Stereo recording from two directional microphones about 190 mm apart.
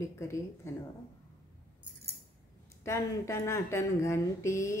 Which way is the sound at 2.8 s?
15° left (ahead or behind).